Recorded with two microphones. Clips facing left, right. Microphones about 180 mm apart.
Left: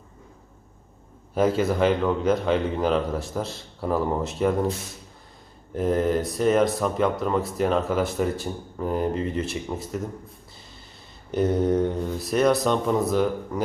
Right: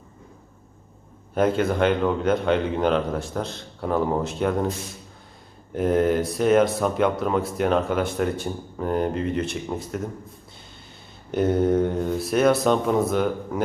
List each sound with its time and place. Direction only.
1.4 s speech: centre (ahead or behind)
5.7 s speech: centre (ahead or behind)
11.3 s speech: centre (ahead or behind)